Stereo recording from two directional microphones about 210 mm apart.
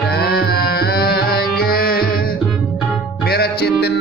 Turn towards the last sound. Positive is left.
turn(degrees=50)  # may be behind; listen again after turning